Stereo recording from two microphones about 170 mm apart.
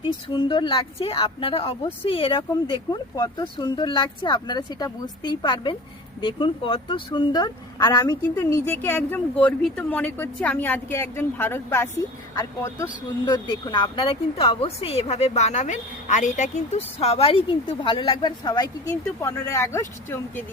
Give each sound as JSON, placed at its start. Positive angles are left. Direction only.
{"t": 0.0, "sound": "speech", "side_deg": 30}